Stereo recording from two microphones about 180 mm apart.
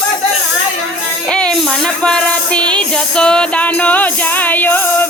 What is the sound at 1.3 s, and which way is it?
Music, 5° left (ahead or behind).